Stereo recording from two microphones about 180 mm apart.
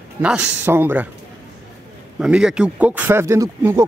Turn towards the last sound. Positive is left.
turn(degrees=-15)  # may be behind; listen again after turning